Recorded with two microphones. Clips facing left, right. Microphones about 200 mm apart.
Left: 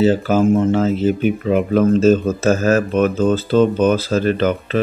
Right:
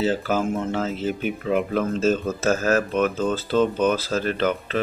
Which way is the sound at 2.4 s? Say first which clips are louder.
Left 4 dB; 10° left (ahead or behind).